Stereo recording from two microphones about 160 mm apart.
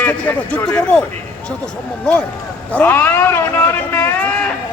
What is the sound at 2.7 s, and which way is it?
A man's voice, 10° left (ahead or behind).